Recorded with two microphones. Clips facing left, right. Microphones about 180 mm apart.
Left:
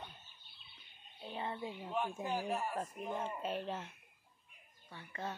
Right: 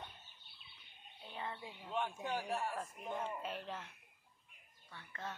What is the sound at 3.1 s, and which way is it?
Speech, 20° left (ahead or behind).